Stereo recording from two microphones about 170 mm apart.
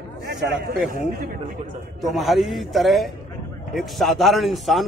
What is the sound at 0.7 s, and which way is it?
Speech, 60° right (ahead or behind).